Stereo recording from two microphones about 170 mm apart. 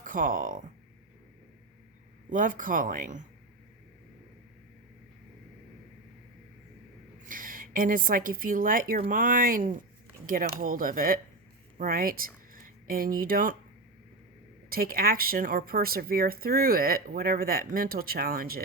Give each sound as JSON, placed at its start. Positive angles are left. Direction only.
{"t": 0.0, "sound": "speech", "side_deg": -50}
{"t": 2.3, "sound": "speech", "side_deg": -50}
{"t": 7.3, "sound": "a woman's voice", "side_deg": -55}
{"t": 14.7, "sound": "speech", "side_deg": -60}